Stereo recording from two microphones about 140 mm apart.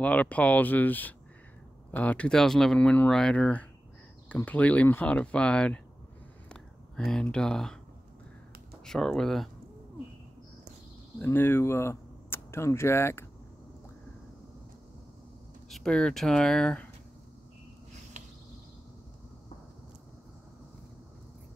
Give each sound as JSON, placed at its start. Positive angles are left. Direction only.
{"t": 0.0, "sound": "speech", "side_deg": 10}
{"t": 8.8, "sound": "speech", "side_deg": 5}
{"t": 11.1, "sound": "speech", "side_deg": 15}
{"t": 15.7, "sound": "speech", "side_deg": 5}